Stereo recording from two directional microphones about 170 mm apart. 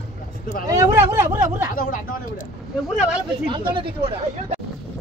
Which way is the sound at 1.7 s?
50° left (ahead or behind).